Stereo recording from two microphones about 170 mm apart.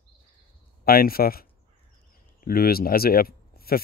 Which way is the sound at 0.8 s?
60° left (ahead or behind).